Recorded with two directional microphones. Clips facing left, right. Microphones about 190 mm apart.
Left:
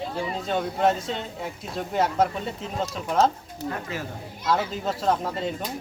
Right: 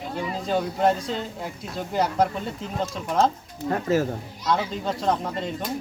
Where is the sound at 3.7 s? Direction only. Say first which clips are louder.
Right 9 dB; 45° right (ahead or behind).